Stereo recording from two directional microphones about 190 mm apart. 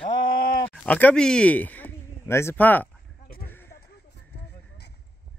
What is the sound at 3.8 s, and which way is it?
Clip-clop, 60° left (ahead or behind).